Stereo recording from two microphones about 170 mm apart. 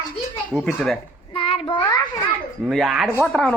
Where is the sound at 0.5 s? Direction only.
Centre (ahead or behind).